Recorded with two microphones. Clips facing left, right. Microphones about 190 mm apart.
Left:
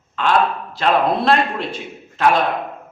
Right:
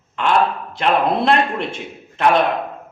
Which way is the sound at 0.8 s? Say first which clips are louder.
Even; 20° right (ahead or behind).